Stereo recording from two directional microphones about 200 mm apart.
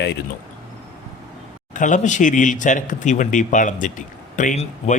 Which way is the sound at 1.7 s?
40° left (ahead or behind).